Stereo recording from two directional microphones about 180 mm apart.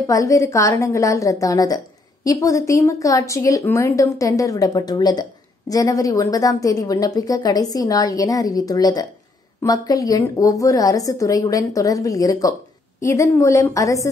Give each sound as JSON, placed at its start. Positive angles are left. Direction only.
{"t": 0.0, "sound": "a woman's voice", "side_deg": 20}